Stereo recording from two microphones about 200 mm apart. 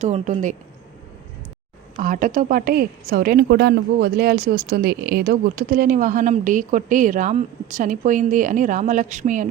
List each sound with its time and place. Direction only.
0.0 s a woman's voice: 35° right (ahead or behind)
2.0 s a woman's voice: 40° right (ahead or behind)